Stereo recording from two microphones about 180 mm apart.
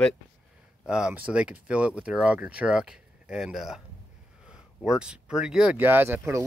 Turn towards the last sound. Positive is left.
turn(degrees=-15)  # may be behind; listen again after turning